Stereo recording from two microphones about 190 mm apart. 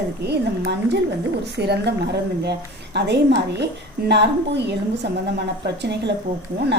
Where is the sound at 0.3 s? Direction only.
60° right (ahead or behind).